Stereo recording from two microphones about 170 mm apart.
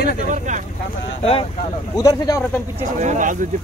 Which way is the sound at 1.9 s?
20° left (ahead or behind).